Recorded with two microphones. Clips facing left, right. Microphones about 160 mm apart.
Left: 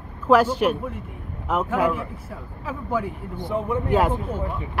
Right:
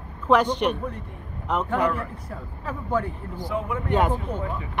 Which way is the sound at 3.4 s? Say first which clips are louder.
Left 3 dB; 25° left (ahead or behind).